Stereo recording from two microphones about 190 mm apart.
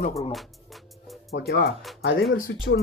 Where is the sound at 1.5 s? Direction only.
55° left (ahead or behind).